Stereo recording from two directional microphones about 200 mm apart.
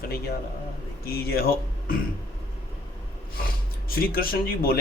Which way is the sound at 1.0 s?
50° left (ahead or behind).